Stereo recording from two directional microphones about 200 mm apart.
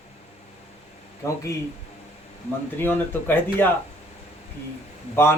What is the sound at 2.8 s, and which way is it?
Speech, 10° left (ahead or behind).